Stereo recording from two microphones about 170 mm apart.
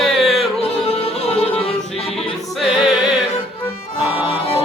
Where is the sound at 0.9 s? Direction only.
35° left (ahead or behind).